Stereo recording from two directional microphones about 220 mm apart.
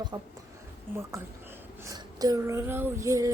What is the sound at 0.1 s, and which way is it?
Female singing, 15° right (ahead or behind).